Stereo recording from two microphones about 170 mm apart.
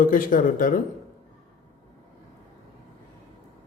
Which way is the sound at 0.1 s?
55° left (ahead or behind).